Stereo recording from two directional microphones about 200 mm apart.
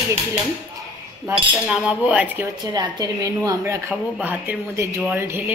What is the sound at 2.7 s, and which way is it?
A woman's voice, 20° right (ahead or behind).